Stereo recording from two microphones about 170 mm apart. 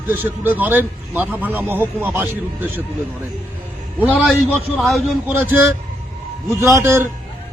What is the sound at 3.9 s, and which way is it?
Speech, 10° right (ahead or behind).